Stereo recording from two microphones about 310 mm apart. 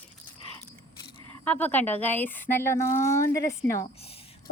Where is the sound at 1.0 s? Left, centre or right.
Centre.